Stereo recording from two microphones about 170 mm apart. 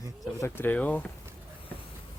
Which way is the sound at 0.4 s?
10° left (ahead or behind).